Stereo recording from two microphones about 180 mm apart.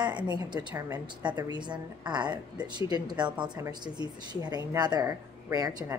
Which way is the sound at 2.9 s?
25° right (ahead or behind).